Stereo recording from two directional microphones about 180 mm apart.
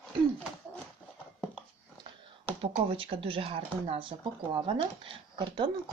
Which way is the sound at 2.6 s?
30° right (ahead or behind).